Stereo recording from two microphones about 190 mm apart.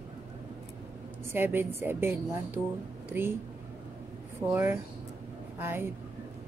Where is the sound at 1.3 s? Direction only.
10° right (ahead or behind).